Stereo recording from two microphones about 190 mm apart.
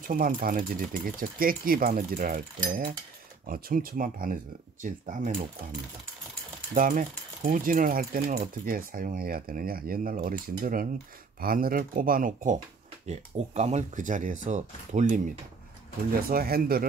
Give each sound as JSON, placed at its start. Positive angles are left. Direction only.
{"t": 0.0, "sound": "speech", "side_deg": -45}
{"t": 3.4, "sound": "speech", "side_deg": -50}
{"t": 6.7, "sound": "speech", "side_deg": -45}
{"t": 16.3, "sound": "speech", "side_deg": -50}